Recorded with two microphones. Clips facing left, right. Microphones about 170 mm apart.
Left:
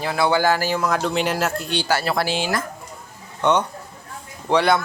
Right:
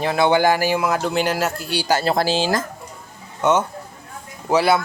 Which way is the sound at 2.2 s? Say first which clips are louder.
Right 3 dB; 35° right (ahead or behind).